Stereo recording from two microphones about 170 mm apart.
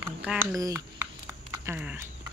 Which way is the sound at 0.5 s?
20° right (ahead or behind).